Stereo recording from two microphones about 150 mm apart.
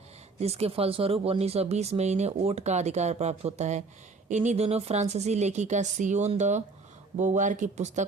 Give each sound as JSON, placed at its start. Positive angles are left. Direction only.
{"t": 0.3, "sound": "speech", "side_deg": -45}